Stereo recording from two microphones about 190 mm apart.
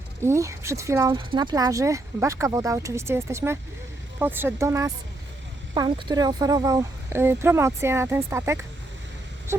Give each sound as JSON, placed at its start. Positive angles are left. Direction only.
{"t": 0.2, "sound": "speech", "side_deg": -15}
{"t": 1.2, "sound": "speech", "side_deg": -25}
{"t": 9.5, "sound": "wail", "side_deg": -15}